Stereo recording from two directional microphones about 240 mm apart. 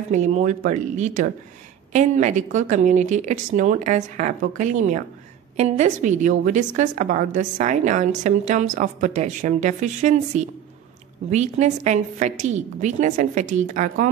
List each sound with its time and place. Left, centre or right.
0.1 s a woman's voice: right